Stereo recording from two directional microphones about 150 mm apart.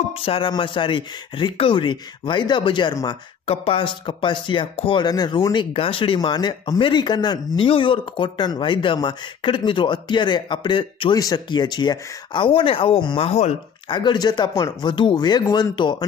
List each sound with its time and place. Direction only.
0.2 s speech: 35° left (ahead or behind)
3.4 s speech: 40° left (ahead or behind)
13.3 s speech: 45° left (ahead or behind)
13.8 s speech: 30° left (ahead or behind)